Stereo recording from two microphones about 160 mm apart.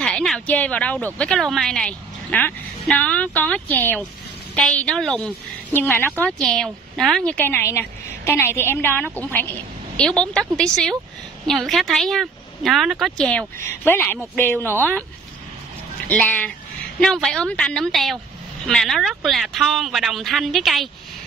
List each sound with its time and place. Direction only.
0.0 s a woman's voice: 5° left (ahead or behind)
5.7 s a woman's voice: 15° left (ahead or behind)
16.1 s a woman's voice: 10° left (ahead or behind)